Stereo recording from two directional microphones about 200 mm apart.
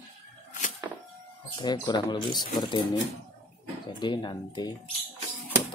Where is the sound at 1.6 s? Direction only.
20° left (ahead or behind).